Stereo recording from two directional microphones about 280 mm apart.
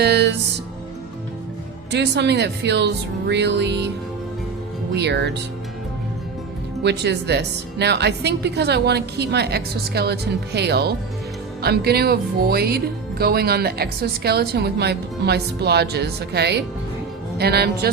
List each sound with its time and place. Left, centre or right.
0.0 s music: right
1.9 s speech: right
4.9 s speech: right
6.8 s speech: right